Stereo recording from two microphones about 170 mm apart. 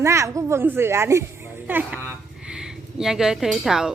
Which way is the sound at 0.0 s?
15° right (ahead or behind).